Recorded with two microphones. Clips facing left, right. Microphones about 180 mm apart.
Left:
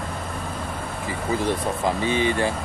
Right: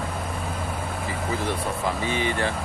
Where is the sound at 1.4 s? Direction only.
20° left (ahead or behind).